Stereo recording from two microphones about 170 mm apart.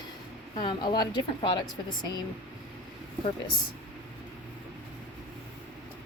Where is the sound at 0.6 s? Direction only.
30° left (ahead or behind).